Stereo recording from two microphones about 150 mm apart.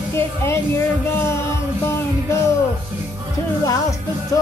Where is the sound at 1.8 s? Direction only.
15° left (ahead or behind).